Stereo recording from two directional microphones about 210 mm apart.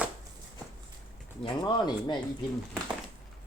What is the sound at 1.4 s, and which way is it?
Speech, 20° left (ahead or behind).